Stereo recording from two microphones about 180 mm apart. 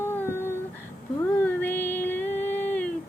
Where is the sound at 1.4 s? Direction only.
10° left (ahead or behind).